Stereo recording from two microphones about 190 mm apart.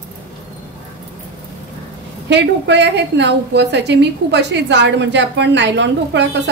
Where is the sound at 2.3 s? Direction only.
65° right (ahead or behind).